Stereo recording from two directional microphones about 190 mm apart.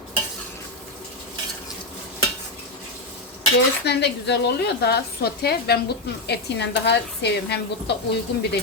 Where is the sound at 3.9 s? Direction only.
60° left (ahead or behind).